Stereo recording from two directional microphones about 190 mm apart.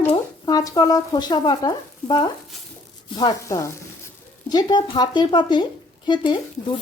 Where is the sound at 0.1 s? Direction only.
20° left (ahead or behind).